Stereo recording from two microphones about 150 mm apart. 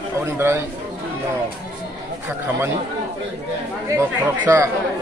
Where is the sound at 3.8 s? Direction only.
20° right (ahead or behind).